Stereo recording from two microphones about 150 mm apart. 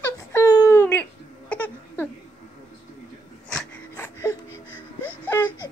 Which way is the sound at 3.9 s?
15° left (ahead or behind).